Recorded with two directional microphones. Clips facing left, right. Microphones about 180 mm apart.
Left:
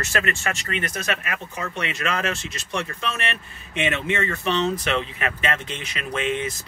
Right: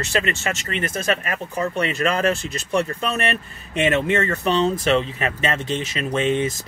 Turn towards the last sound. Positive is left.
turn(degrees=-35)  # may be behind; listen again after turning